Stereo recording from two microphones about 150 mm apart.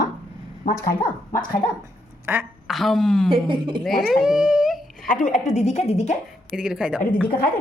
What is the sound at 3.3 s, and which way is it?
Speech, 35° right (ahead or behind).